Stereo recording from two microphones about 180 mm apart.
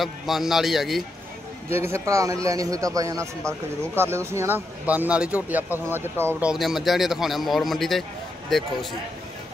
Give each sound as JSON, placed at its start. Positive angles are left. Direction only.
{"t": 0.0, "sound": "speech", "side_deg": 0}
{"t": 1.9, "sound": "speech", "side_deg": -15}
{"t": 6.5, "sound": "speech", "side_deg": 0}